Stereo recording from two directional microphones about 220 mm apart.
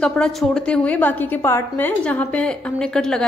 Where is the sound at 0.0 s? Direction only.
5° left (ahead or behind).